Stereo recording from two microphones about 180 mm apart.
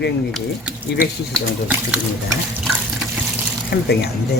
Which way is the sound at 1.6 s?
10° right (ahead or behind).